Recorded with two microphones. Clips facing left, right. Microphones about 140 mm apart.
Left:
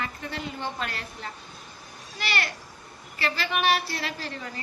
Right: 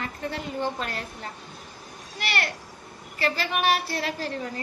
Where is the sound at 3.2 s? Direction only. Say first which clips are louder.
Right 1 dB; 45° right (ahead or behind).